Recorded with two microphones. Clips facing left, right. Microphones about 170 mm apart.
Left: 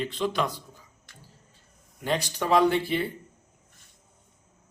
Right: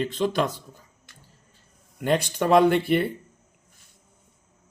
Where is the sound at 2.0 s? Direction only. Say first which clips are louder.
Right 5 dB; 55° right (ahead or behind).